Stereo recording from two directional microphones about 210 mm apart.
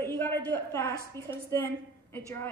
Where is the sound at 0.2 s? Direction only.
10° left (ahead or behind).